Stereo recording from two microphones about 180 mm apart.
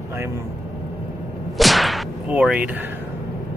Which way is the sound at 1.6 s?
Centre (ahead or behind).